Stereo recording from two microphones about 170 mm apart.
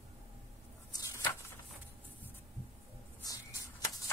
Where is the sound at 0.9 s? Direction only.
20° left (ahead or behind).